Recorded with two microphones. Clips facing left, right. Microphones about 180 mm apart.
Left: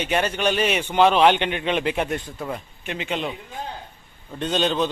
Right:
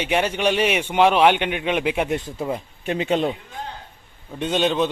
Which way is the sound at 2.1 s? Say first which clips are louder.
Right 4 dB; 25° right (ahead or behind).